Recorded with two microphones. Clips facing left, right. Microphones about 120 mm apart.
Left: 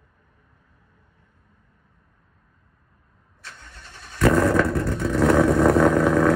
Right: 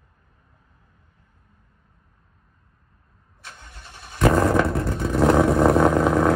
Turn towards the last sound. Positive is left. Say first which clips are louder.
# even
turn(degrees=-25)  # may be behind; listen again after turning